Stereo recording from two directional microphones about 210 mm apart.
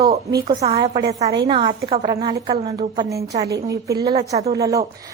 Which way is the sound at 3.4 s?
55° right (ahead or behind).